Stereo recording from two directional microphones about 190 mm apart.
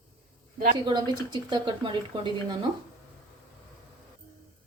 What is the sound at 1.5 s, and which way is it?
Speech, 25° right (ahead or behind).